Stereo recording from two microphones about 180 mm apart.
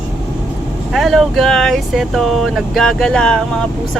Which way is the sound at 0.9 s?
Centre (ahead or behind).